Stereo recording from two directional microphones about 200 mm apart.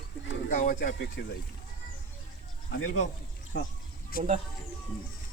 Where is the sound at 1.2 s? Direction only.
60° left (ahead or behind).